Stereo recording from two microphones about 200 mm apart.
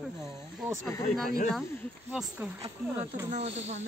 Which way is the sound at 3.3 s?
30° right (ahead or behind).